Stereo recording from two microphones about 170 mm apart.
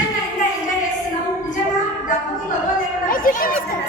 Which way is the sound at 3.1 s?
55° left (ahead or behind).